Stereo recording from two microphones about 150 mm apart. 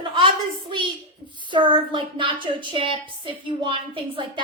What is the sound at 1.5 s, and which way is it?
A woman's voice, 30° right (ahead or behind).